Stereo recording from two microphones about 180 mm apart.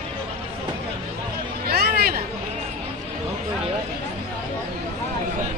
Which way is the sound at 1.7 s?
60° right (ahead or behind).